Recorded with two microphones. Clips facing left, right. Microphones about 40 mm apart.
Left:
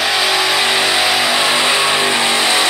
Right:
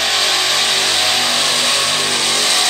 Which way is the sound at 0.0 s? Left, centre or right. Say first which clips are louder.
Left 2 dB; centre.